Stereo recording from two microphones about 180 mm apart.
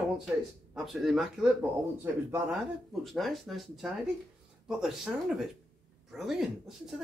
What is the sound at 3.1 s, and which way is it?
Speech, centre (ahead or behind).